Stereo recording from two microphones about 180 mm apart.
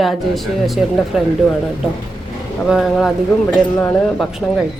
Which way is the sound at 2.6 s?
Centre (ahead or behind).